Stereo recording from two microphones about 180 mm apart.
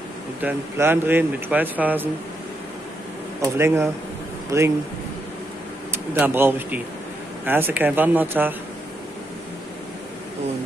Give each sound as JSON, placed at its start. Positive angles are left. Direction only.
{"t": 0.4, "sound": "speech", "side_deg": -10}
{"t": 3.5, "sound": "speech", "side_deg": -15}
{"t": 5.9, "sound": "speech", "side_deg": -10}